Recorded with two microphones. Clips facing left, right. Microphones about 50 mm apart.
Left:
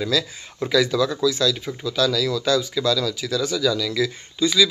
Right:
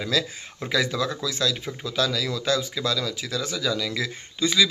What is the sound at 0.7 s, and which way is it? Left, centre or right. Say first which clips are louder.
Speech: left 5 dB; right.